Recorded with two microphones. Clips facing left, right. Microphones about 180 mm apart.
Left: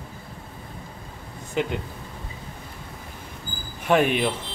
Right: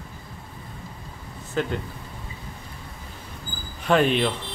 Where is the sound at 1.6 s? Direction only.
15° left (ahead or behind).